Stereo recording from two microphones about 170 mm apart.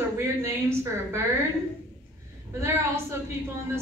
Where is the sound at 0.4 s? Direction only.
15° right (ahead or behind).